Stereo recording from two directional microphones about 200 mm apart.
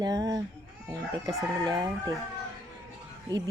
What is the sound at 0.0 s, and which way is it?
Speech, 20° right (ahead or behind).